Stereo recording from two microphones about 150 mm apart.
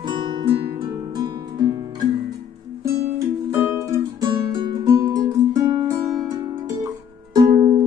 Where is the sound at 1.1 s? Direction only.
30° right (ahead or behind).